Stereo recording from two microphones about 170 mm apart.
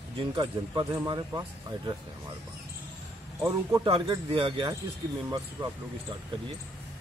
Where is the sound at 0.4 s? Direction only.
25° right (ahead or behind).